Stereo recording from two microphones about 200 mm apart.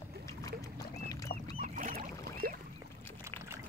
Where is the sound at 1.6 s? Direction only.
40° right (ahead or behind).